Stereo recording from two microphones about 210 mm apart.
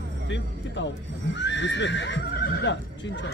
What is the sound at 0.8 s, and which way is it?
Speech, 60° left (ahead or behind).